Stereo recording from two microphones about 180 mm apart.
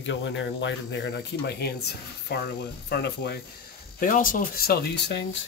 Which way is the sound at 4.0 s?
50° left (ahead or behind).